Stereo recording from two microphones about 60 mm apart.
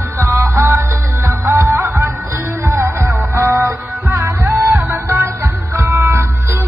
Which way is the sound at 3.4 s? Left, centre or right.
Right.